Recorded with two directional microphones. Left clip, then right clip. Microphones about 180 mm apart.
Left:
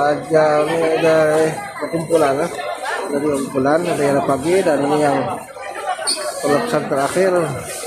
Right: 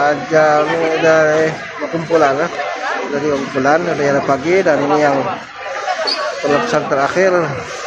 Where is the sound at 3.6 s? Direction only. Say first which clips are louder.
Right 3 dB; 20° left (ahead or behind).